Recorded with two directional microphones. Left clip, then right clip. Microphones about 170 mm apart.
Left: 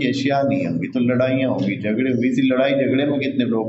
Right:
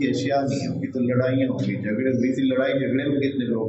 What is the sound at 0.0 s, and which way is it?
A man's voice, 45° left (ahead or behind).